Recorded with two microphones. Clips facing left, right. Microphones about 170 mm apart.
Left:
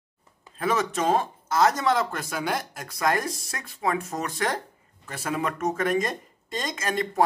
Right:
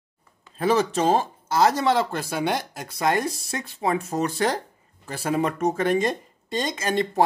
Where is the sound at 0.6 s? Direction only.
30° right (ahead or behind).